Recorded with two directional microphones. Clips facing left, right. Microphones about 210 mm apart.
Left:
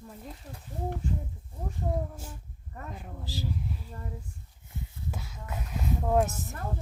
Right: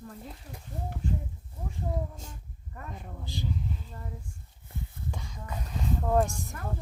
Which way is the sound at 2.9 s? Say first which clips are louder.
Even; centre (ahead or behind).